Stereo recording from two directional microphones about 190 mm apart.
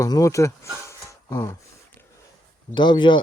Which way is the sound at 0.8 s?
15° left (ahead or behind).